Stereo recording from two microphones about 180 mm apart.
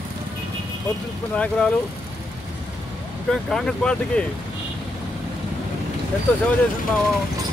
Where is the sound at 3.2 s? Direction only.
5° left (ahead or behind).